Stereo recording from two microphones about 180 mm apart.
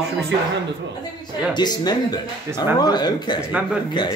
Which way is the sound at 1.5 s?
25° left (ahead or behind).